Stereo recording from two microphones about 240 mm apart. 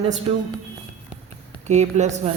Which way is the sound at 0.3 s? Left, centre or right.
Right.